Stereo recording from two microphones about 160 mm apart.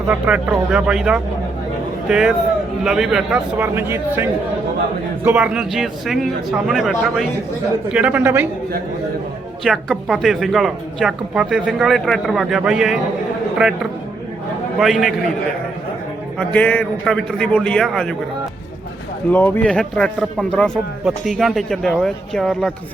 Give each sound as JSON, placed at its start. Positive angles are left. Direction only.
{"t": 0.1, "sound": "speech", "side_deg": -10}
{"t": 3.6, "sound": "speech", "side_deg": -15}
{"t": 9.6, "sound": "speech", "side_deg": -5}
{"t": 14.8, "sound": "speech", "side_deg": 0}
{"t": 16.4, "sound": "speech", "side_deg": 10}
{"t": 19.3, "sound": "speech", "side_deg": 10}